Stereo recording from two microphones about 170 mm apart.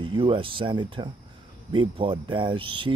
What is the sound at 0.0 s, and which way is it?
Speech, 30° right (ahead or behind).